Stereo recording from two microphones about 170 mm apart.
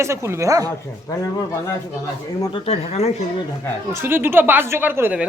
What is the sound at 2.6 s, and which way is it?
Speech, 35° left (ahead or behind).